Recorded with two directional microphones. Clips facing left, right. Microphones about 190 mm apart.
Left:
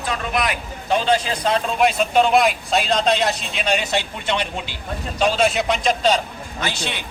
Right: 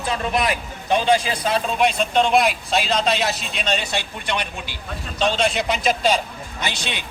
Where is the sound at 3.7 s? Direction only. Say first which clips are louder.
Left 3 dB; 20° left (ahead or behind).